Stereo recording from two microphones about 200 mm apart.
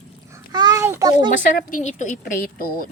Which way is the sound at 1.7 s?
40° left (ahead or behind).